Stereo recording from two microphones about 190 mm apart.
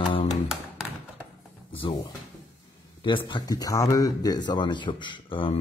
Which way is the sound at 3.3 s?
20° left (ahead or behind).